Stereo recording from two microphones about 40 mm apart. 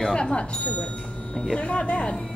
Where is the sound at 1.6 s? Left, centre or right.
Left.